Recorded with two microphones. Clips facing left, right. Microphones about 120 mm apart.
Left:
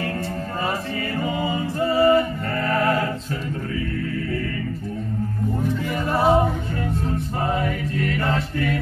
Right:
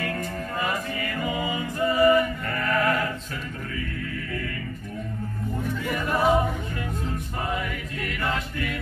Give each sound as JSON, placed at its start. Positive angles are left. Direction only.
{"t": 1.2, "sound": "music", "side_deg": 30}
{"t": 6.0, "sound": "music", "side_deg": 30}
{"t": 7.4, "sound": "chant", "side_deg": 35}